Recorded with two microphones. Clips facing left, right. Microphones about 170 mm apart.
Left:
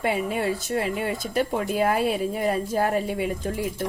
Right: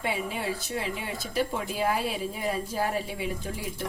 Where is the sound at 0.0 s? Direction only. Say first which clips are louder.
Left 6 dB; 55° left (ahead or behind).